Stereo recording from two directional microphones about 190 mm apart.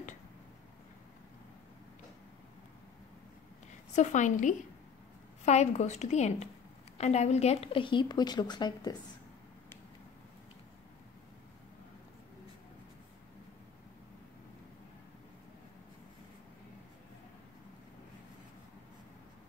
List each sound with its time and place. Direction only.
3.9 s a woman's voice: 40° left (ahead or behind); by 8.9 s 20° left (ahead or behind)